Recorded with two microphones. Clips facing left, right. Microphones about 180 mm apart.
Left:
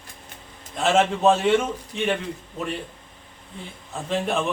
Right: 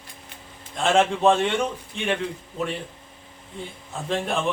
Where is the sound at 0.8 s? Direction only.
Centre (ahead or behind).